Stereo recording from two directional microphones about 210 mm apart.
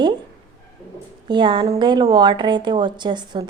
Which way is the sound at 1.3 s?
20° right (ahead or behind).